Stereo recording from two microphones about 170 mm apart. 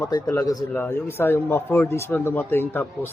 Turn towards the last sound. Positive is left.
turn(degrees=15)  # may be behind; listen again after turning